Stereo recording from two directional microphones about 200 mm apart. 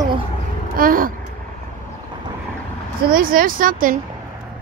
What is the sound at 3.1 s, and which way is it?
Speech, 45° right (ahead or behind).